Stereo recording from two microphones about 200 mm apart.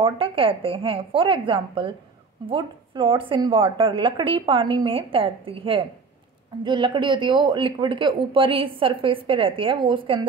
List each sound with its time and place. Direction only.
0.0 s speech: 25° right (ahead or behind)